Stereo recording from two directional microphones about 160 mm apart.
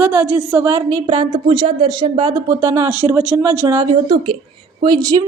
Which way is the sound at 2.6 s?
15° right (ahead or behind).